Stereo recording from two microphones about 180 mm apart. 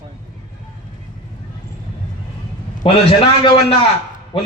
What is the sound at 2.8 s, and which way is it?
Speech, 30° left (ahead or behind).